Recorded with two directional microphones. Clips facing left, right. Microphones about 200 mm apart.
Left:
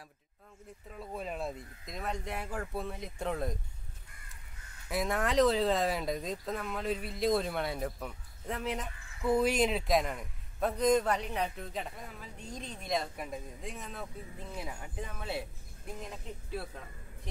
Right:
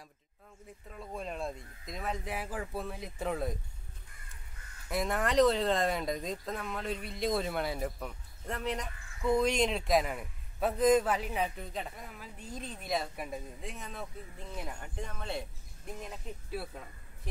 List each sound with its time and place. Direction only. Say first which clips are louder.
0.8 s speech: left 1 dB; centre (ahead or behind)
4.8 s speech: even; centre (ahead or behind)